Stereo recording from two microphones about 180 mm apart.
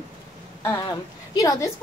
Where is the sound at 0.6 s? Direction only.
15° left (ahead or behind).